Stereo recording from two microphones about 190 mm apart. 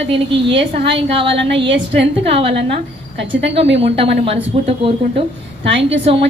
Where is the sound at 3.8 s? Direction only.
30° right (ahead or behind).